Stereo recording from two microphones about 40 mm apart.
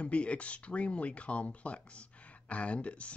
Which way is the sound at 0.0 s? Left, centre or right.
Left.